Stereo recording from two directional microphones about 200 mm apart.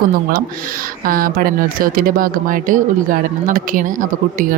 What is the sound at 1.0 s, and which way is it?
Speech, 45° right (ahead or behind).